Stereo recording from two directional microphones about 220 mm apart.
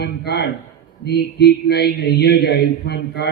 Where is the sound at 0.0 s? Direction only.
50° left (ahead or behind).